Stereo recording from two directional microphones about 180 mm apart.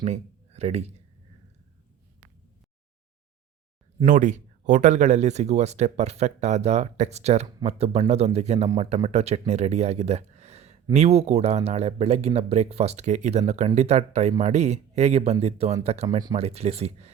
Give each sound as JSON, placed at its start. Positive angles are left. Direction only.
{"t": 0.0, "sound": "speech", "side_deg": -35}
{"t": 4.0, "sound": "speech", "side_deg": -45}